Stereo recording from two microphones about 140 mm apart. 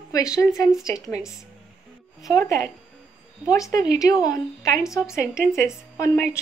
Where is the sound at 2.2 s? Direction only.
25° left (ahead or behind).